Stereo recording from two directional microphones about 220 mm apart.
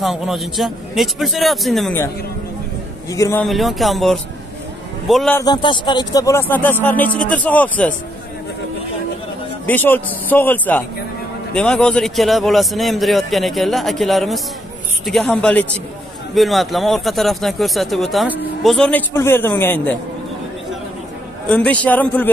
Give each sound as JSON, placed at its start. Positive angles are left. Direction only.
{"t": 0.0, "sound": "speech", "side_deg": 0}
{"t": 3.1, "sound": "speech", "side_deg": 15}
{"t": 3.4, "sound": "speech", "side_deg": 0}
{"t": 5.4, "sound": "speech", "side_deg": 20}
{"t": 9.7, "sound": "speech", "side_deg": 10}
{"t": 21.5, "sound": "speech", "side_deg": 5}